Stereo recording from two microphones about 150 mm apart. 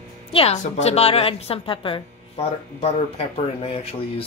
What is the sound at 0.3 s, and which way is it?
A woman's voice, 40° left (ahead or behind).